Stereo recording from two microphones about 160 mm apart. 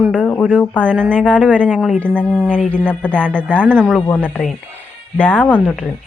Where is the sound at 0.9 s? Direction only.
10° right (ahead or behind).